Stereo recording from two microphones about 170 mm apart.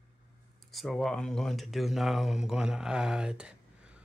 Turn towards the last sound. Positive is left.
turn(degrees=-5)  # may be behind; listen again after turning